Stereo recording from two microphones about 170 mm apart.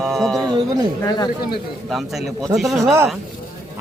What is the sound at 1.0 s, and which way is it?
Speech, 25° left (ahead or behind).